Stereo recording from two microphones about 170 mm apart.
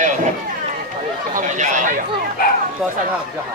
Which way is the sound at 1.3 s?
45° right (ahead or behind).